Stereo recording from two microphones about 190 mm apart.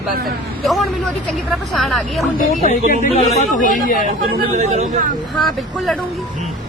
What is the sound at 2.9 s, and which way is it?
Speech, 40° left (ahead or behind).